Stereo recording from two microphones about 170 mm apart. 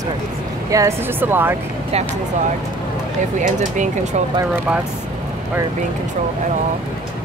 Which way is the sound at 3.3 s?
45° right (ahead or behind).